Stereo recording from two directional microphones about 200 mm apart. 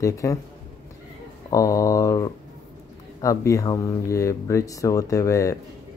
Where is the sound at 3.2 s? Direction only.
15° left (ahead or behind).